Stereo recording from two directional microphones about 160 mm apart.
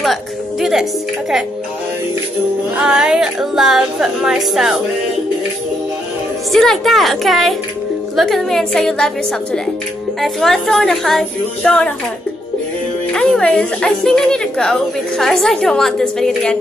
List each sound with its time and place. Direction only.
0.0 s music: centre (ahead or behind)
2.8 s a woman's voice: 5° right (ahead or behind)
6.5 s a woman's voice: centre (ahead or behind)
13.1 s a woman's voice: 5° left (ahead or behind)